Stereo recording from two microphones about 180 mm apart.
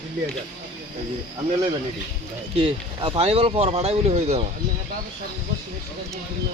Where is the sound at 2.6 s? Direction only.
30° right (ahead or behind).